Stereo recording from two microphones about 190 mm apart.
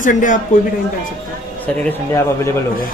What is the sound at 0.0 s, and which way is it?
Speech, 45° left (ahead or behind).